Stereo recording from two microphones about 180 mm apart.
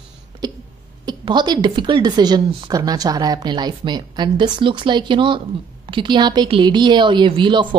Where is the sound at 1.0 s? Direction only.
25° right (ahead or behind).